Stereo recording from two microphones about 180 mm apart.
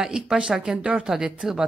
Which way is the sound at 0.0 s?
5° right (ahead or behind).